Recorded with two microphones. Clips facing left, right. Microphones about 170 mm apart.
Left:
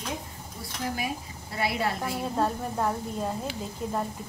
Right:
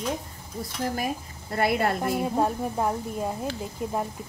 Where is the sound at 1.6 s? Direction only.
55° right (ahead or behind).